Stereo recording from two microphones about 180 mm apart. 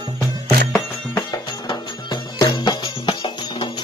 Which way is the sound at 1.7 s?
25° left (ahead or behind).